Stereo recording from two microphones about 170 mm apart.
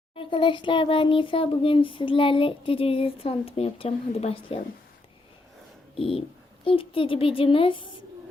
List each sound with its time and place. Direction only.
0.2 s a child's voice: 30° left (ahead or behind)
6.0 s a child's voice: 35° left (ahead or behind)